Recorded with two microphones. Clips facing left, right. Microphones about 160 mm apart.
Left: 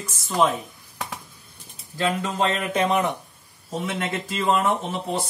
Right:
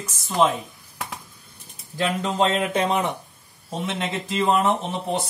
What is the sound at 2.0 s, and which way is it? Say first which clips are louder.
Speech: right 1 dB; 25° right (ahead or behind).